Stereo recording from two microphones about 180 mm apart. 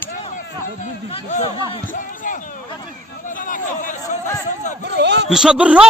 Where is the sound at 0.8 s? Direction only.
40° left (ahead or behind).